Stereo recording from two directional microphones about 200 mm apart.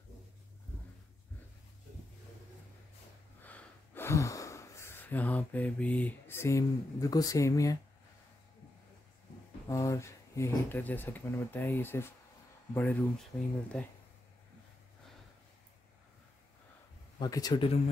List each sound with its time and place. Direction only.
3.4 s speech: 10° left (ahead or behind)
9.7 s speech: 15° left (ahead or behind)
17.2 s speech: 20° left (ahead or behind)